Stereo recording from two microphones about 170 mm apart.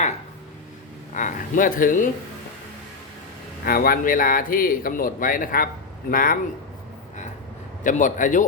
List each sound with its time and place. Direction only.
1.1 s speech: 50° left (ahead or behind)
3.7 s speech: 60° left (ahead or behind)
7.9 s speech: 50° left (ahead or behind)